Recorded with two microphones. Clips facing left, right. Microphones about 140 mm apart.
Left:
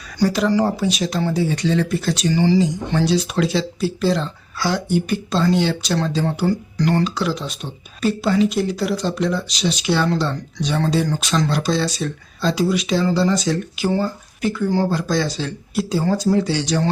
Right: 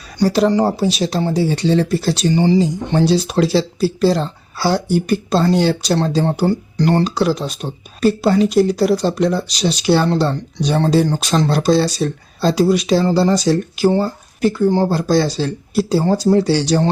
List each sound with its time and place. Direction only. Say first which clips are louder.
0.3 s speech: right 4 dB; 35° right (ahead or behind)